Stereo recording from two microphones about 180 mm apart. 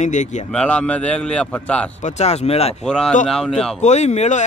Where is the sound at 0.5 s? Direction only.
5° left (ahead or behind).